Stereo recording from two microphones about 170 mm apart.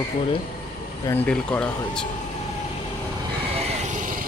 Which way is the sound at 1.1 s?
5° left (ahead or behind).